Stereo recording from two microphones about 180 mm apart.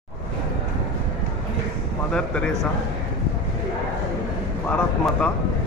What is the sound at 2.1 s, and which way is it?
Speech, 5° left (ahead or behind).